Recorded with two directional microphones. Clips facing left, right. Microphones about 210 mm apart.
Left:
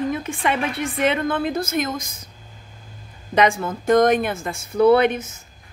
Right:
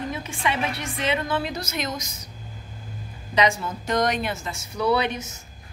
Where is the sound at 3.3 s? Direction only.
50° left (ahead or behind).